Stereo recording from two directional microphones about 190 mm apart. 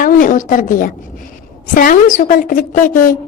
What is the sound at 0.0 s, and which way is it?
A woman's voice, 45° left (ahead or behind).